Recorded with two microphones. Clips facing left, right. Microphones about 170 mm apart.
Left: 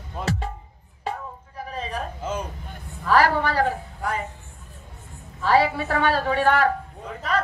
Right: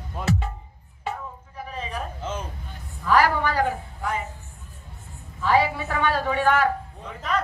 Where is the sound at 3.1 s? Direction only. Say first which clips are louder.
Left 1 dB; 35° left (ahead or behind).